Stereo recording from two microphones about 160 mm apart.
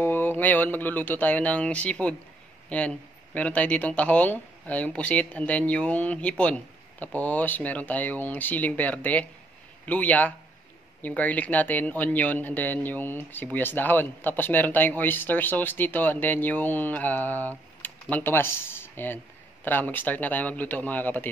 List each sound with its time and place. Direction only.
0.0 s speech: 10° left (ahead or behind)